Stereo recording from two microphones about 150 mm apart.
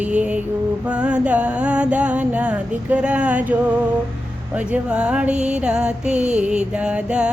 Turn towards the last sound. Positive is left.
turn(degrees=-5)  # may be behind; listen again after turning